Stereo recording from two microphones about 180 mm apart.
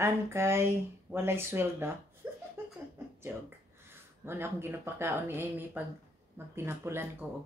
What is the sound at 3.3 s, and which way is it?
Speech, 10° right (ahead or behind).